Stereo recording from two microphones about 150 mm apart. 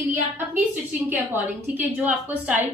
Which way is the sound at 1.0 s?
10° right (ahead or behind).